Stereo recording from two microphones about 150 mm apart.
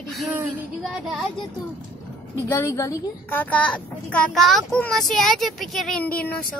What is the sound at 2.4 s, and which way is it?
A child's voice, 15° left (ahead or behind).